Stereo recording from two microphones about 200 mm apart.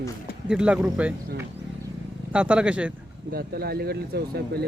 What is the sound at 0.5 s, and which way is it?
Speech, 5° right (ahead or behind).